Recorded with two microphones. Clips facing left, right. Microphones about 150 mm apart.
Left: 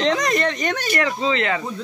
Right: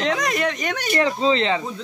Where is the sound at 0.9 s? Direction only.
25° right (ahead or behind).